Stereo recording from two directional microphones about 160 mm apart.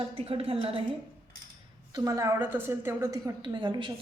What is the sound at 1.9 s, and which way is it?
A woman's voice, 20° right (ahead or behind).